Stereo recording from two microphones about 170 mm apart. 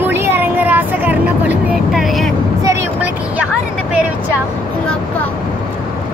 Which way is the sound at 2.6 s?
15° right (ahead or behind).